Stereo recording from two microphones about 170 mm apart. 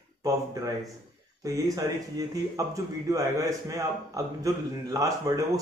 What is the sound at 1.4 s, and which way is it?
A man's voice, 20° right (ahead or behind).